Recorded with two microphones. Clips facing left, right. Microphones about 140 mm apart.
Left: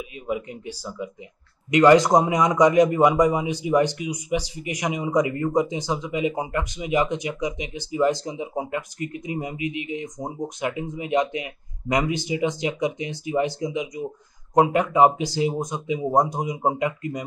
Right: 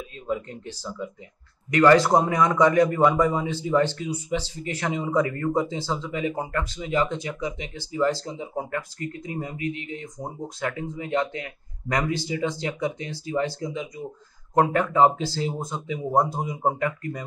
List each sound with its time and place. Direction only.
0.3 s a man's voice: 10° left (ahead or behind)